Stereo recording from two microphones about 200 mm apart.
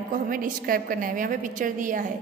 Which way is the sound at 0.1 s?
45° right (ahead or behind).